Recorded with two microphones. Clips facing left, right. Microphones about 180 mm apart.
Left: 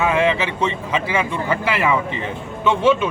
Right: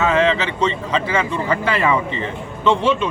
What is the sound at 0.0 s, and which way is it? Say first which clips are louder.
Speech: right 1 dB; 10° left (ahead or behind).